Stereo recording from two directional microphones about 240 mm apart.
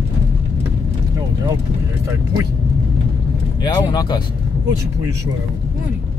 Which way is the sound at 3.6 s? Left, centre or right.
Centre.